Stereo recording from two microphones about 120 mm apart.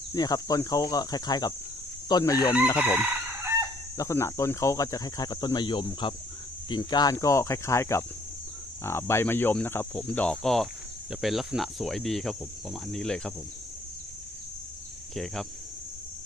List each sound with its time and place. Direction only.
0.1 s speech: 30° left (ahead or behind)
2.7 s chicken: 10° right (ahead or behind)
3.9 s speech: 25° left (ahead or behind); by 13.3 s 5° left (ahead or behind)
15.1 s speech: centre (ahead or behind)